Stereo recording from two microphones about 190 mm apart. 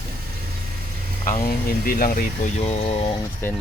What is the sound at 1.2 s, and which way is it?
Speech, 45° left (ahead or behind).